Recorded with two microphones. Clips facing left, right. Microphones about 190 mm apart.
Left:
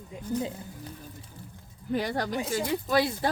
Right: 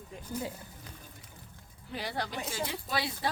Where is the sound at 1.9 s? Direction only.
45° left (ahead or behind).